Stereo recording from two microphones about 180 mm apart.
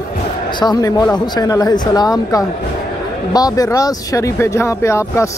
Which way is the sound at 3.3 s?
20° left (ahead or behind).